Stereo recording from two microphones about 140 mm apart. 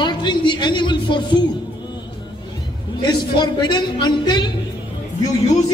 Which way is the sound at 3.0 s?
30° left (ahead or behind).